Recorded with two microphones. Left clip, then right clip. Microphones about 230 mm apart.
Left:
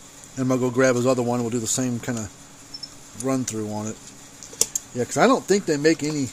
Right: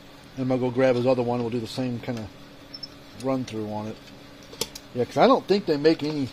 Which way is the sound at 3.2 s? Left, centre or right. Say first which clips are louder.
Left 2 dB; left.